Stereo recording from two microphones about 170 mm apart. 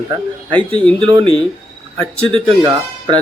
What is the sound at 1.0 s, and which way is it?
Speech, 30° right (ahead or behind).